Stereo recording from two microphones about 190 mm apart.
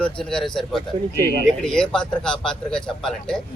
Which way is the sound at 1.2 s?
55° right (ahead or behind).